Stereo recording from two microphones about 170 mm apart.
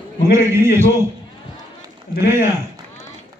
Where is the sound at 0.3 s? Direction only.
15° right (ahead or behind).